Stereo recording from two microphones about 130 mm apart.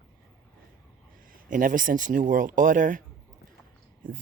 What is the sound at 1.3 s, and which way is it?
Speech, 90° right.